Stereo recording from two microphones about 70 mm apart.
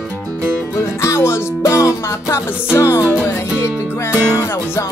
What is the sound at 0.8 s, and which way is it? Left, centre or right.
Music, left.